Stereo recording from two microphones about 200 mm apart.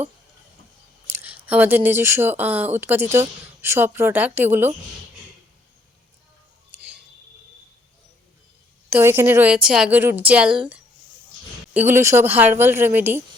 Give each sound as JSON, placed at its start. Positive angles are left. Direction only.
{"t": 1.0, "sound": "speech", "side_deg": -10}
{"t": 8.9, "sound": "speech", "side_deg": -10}